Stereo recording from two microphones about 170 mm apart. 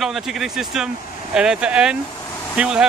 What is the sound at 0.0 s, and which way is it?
Speech, centre (ahead or behind).